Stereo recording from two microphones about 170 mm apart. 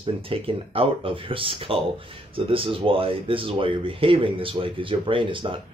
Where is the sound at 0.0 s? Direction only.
35° right (ahead or behind).